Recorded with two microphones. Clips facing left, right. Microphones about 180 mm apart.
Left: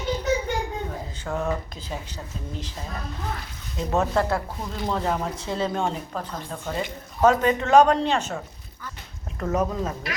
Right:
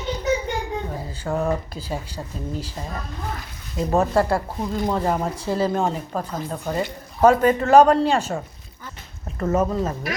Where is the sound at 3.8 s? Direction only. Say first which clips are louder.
Right 4 dB; 5° right (ahead or behind).